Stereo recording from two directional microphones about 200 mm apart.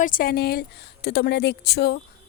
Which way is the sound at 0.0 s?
45° left (ahead or behind).